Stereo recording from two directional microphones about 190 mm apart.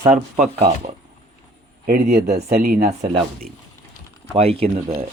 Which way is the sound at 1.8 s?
40° right (ahead or behind).